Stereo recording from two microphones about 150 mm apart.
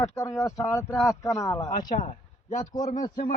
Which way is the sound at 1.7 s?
55° left (ahead or behind).